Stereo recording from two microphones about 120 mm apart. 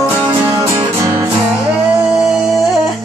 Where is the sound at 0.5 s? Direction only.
35° right (ahead or behind).